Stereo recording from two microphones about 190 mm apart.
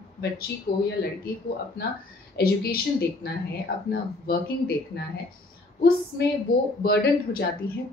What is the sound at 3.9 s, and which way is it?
Speech, 55° left (ahead or behind).